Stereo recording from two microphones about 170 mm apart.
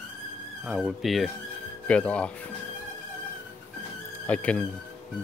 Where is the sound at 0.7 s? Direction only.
Centre (ahead or behind).